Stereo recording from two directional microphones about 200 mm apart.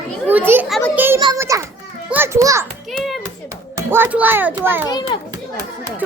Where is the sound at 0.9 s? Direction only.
10° right (ahead or behind).